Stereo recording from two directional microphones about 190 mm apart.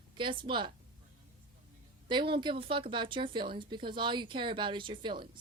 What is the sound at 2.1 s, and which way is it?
Speech, 25° right (ahead or behind).